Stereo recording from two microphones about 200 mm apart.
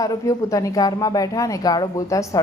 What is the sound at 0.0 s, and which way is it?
Speech, 15° left (ahead or behind).